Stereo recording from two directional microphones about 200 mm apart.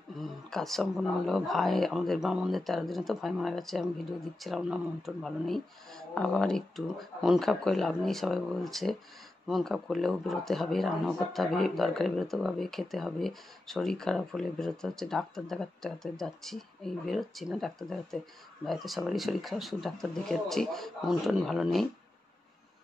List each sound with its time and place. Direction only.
0.2 s speech: centre (ahead or behind)